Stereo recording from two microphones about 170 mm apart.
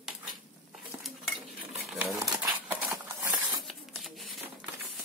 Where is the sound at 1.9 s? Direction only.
5° right (ahead or behind).